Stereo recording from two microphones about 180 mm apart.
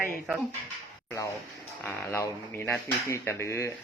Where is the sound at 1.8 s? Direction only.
10° left (ahead or behind).